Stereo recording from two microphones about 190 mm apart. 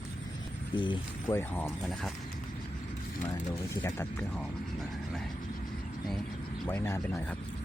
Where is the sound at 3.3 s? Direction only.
15° left (ahead or behind).